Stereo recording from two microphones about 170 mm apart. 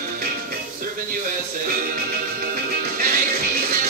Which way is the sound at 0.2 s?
60° right (ahead or behind).